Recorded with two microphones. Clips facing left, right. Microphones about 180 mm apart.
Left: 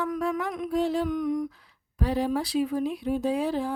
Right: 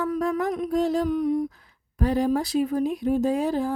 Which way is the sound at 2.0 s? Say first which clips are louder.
Right 4 dB; 45° right (ahead or behind).